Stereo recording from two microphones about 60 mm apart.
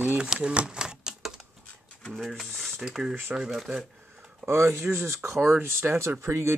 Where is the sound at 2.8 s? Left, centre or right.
Centre.